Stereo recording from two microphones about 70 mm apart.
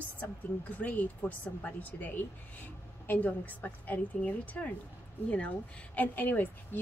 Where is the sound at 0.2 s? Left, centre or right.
Left.